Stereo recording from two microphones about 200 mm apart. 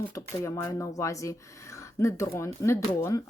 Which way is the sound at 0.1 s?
15° left (ahead or behind).